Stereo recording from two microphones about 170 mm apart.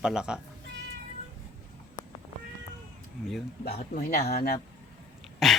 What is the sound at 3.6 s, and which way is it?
Speech, 70° left (ahead or behind).